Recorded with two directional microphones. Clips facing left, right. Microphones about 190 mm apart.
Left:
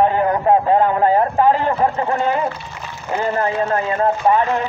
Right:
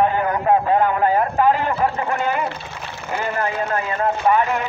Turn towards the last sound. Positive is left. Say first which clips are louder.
# left 2 dB
turn(degrees=30)  # may be behind; listen again after turning